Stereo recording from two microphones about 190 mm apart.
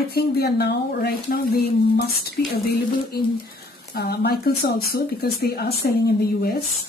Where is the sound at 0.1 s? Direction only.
55° left (ahead or behind).